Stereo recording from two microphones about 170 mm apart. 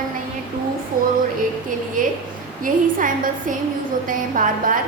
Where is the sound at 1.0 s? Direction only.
55° right (ahead or behind).